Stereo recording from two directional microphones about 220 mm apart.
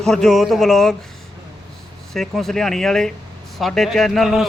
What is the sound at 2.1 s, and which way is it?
A man's voice, centre (ahead or behind).